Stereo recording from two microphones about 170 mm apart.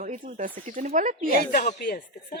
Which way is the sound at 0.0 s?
50° right (ahead or behind).